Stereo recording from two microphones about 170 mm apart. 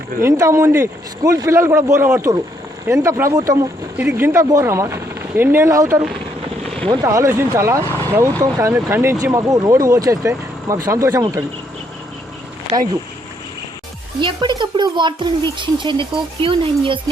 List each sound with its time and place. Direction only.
0.2 s speech: 15° right (ahead or behind)
14.2 s speech: 25° right (ahead or behind)